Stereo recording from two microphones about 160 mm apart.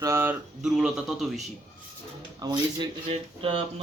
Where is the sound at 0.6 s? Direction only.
5° right (ahead or behind).